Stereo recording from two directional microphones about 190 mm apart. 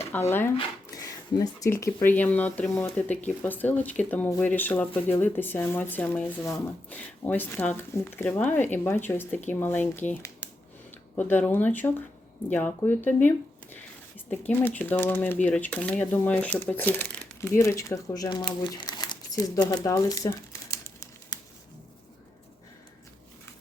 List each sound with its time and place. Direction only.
0.1 s speech: 10° left (ahead or behind)